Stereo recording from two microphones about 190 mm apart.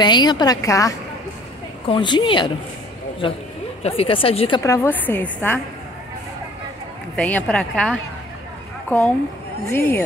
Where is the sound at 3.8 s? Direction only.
30° left (ahead or behind).